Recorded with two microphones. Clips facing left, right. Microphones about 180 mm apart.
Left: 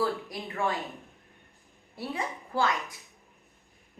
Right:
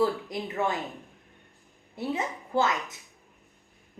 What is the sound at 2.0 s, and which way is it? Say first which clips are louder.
Speech: right 4 dB; 20° right (ahead or behind).